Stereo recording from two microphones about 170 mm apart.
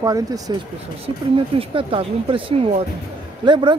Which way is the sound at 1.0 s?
35° right (ahead or behind).